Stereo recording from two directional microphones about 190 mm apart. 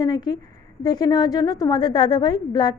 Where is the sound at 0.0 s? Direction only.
20° left (ahead or behind).